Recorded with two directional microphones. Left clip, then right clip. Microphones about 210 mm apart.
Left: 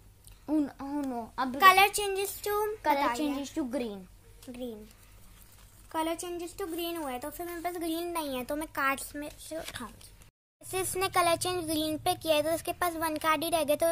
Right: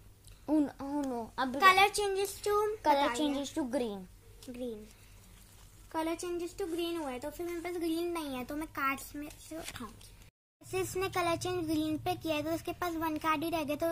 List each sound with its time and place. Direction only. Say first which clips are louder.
0.5 s a sound: even; 5° left (ahead or behind)
1.6 s a woman's voice: left 4 dB; 40° left (ahead or behind)
3.3 s a woman's voice: even; 5° left (ahead or behind)
5.9 s a woman's voice: left 3 dB; 40° left (ahead or behind)
10.7 s a woman's voice: left 4 dB; 50° left (ahead or behind)